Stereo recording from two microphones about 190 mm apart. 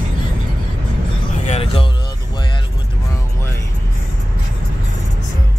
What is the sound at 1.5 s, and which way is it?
Music, 30° left (ahead or behind).